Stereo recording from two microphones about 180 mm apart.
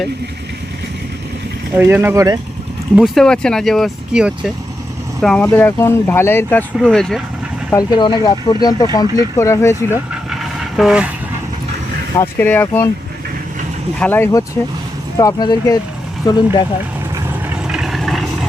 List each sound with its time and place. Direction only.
1.7 s speech: 15° right (ahead or behind)
2.9 s speech: centre (ahead or behind)
7.7 s speech: 20° left (ahead or behind)
10.8 s speech: 5° right (ahead or behind)
12.1 s speech: 10° left (ahead or behind)
14.0 s speech: 10° left (ahead or behind)
17.2 s vehicle: 5° right (ahead or behind)